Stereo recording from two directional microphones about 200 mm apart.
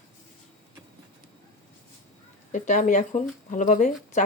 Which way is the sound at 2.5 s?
40° left (ahead or behind).